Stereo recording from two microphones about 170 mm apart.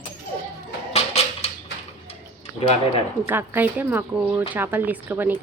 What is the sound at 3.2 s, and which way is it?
A woman's voice, 10° right (ahead or behind).